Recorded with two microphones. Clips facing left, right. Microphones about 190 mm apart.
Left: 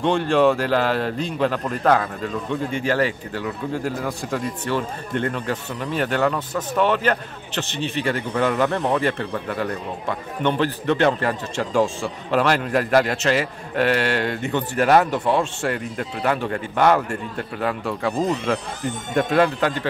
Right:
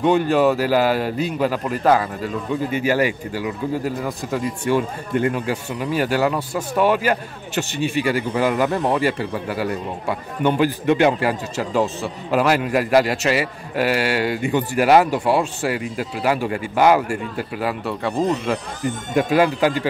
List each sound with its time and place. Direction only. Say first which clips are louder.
0.0 s speech: right 1 dB; 5° right (ahead or behind)